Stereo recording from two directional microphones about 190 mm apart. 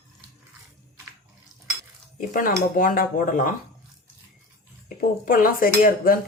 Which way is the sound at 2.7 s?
45° left (ahead or behind).